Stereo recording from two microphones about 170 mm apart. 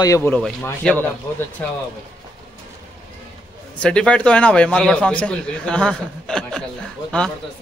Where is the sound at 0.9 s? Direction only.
5° left (ahead or behind).